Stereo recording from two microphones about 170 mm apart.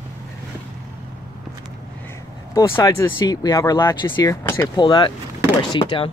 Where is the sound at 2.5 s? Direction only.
20° left (ahead or behind).